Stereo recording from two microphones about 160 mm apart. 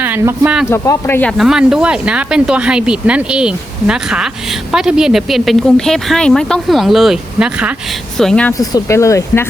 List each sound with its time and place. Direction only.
0.0 s speech: 10° right (ahead or behind)
0.7 s speech: 15° left (ahead or behind)
1.3 s speech: centre (ahead or behind)
8.2 s speech: 5° left (ahead or behind)
8.5 s speech: 20° left (ahead or behind)